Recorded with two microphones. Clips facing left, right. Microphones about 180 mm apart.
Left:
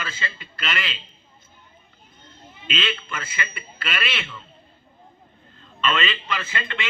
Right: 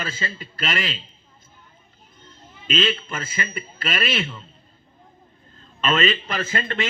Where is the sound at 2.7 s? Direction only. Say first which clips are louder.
Right 5 dB; 45° right (ahead or behind).